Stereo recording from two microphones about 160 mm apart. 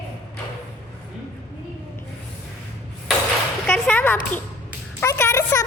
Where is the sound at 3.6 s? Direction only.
5° left (ahead or behind).